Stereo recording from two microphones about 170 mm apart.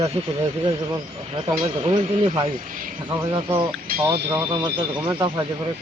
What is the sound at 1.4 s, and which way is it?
Speech, 30° right (ahead or behind).